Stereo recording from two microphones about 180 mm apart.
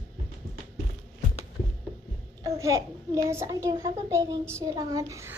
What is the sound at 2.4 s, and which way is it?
A child's voice, 20° right (ahead or behind).